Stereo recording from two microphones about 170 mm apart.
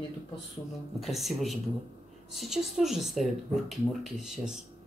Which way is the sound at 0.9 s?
Centre (ahead or behind).